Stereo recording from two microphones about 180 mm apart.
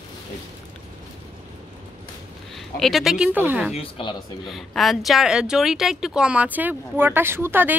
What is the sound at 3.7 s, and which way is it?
Speech, 30° left (ahead or behind).